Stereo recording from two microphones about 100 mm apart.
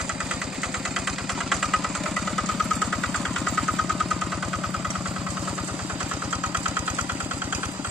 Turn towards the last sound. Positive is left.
turn(degrees=-15)  # may be behind; listen again after turning